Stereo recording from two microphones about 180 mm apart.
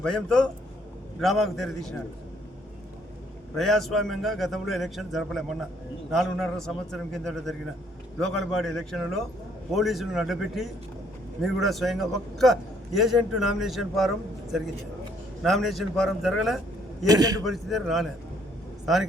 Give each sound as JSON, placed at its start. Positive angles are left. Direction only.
{"t": 0.0, "sound": "a man's voice", "side_deg": 5}
{"t": 3.5, "sound": "a man's voice", "side_deg": 0}
{"t": 17.1, "sound": "a man's voice", "side_deg": -20}
{"t": 17.4, "sound": "a man's voice", "side_deg": 0}